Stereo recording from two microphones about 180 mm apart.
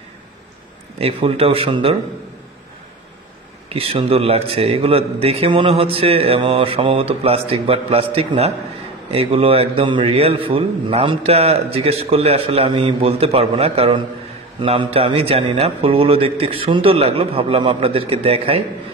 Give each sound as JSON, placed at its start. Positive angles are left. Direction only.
{"t": 0.9, "sound": "a man's voice", "side_deg": -30}
{"t": 3.6, "sound": "a man's voice", "side_deg": -30}